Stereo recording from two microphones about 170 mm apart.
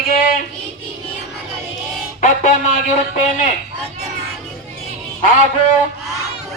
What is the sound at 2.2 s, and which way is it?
Speech, 50° left (ahead or behind).